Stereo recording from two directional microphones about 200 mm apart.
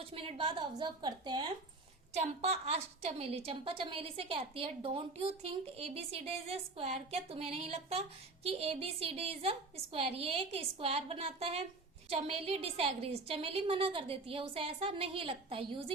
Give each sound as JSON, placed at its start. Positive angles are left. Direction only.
{"t": 0.0, "sound": "a woman's voice", "side_deg": -30}
{"t": 2.1, "sound": "a woman's voice", "side_deg": -35}